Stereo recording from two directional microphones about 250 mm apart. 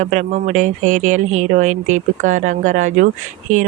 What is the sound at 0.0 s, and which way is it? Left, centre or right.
Speech, right.